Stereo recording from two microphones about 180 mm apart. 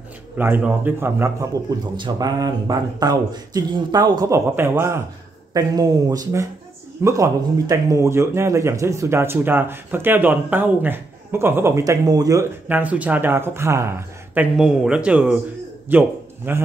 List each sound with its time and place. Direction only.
0.4 s speech: 10° right (ahead or behind)